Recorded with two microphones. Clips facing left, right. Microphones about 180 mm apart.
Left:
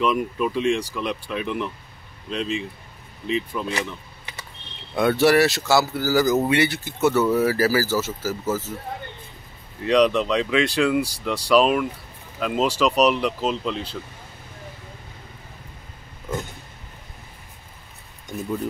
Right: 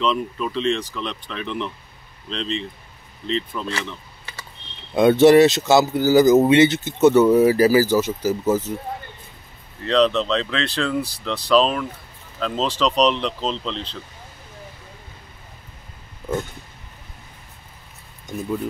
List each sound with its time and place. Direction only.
0.0 s speech: 10° left (ahead or behind)
4.9 s speech: 20° right (ahead or behind)
9.8 s speech: 15° left (ahead or behind)